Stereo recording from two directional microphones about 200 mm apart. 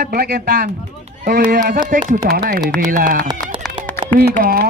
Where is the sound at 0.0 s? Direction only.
50° right (ahead or behind).